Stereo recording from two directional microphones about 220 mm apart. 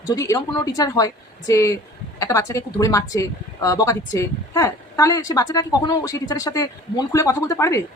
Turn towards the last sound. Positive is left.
turn(degrees=15)  # may be behind; listen again after turning